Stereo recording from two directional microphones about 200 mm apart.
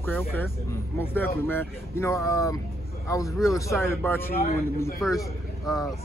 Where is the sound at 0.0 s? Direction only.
10° left (ahead or behind).